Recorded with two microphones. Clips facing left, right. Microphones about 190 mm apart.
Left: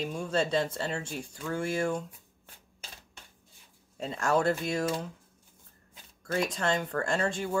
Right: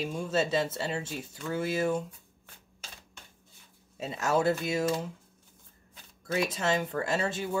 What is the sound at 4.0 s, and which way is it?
Speech, 5° right (ahead or behind).